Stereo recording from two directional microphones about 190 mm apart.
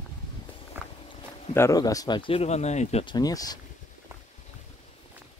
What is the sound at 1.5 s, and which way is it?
Speech, 15° left (ahead or behind).